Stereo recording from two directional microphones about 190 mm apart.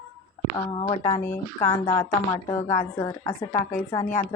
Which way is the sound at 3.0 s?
15° left (ahead or behind).